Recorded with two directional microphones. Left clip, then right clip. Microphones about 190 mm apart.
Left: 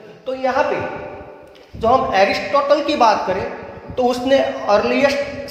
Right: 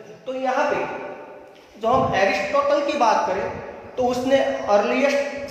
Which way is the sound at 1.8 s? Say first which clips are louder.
Left 5 dB; 35° left (ahead or behind).